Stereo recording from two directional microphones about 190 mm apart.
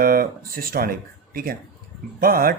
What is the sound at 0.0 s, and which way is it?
Speech, 50° right (ahead or behind).